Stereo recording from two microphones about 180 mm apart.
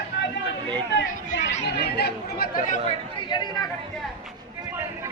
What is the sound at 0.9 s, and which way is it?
Chatter, 80° left.